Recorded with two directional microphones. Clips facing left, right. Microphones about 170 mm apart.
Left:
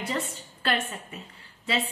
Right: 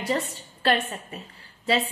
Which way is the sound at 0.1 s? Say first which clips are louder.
Right 4 dB; 35° right (ahead or behind).